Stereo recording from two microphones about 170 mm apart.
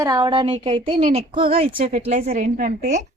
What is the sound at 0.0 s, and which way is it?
A woman's voice, 20° right (ahead or behind).